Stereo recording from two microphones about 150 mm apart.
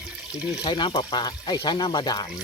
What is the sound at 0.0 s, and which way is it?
Water, 5° right (ahead or behind).